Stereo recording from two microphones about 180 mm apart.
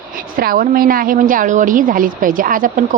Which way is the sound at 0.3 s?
55° right (ahead or behind).